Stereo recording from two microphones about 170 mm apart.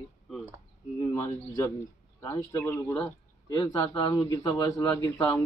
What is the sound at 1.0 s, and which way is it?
Speech, 15° left (ahead or behind).